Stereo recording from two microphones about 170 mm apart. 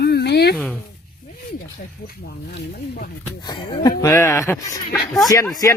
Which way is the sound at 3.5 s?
25° left (ahead or behind).